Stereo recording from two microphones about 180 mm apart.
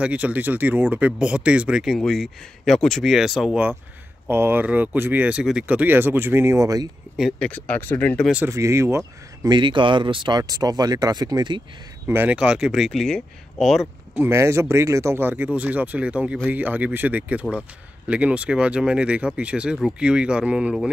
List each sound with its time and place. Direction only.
0.0 s speech: 10° right (ahead or behind)
7.2 s speech: 5° left (ahead or behind)
8.3 s speech: 10° right (ahead or behind)
12.1 s speech: 10° right (ahead or behind)